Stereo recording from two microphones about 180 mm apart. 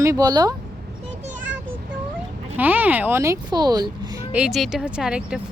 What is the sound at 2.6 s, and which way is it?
Speech, 10° right (ahead or behind).